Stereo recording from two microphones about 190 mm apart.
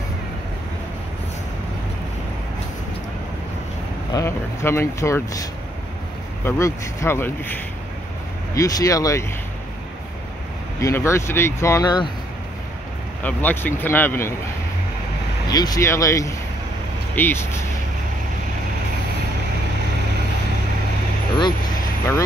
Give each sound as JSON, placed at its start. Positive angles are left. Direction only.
{"t": 4.1, "sound": "speech", "side_deg": 15}
{"t": 10.8, "sound": "speech", "side_deg": 15}
{"t": 13.2, "sound": "speech", "side_deg": 10}
{"t": 15.4, "sound": "speech", "side_deg": 20}